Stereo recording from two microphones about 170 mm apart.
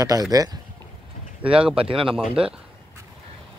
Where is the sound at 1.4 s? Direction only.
5° right (ahead or behind).